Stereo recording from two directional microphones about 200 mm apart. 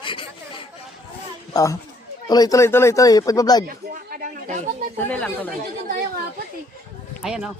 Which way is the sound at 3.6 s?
45° right (ahead or behind).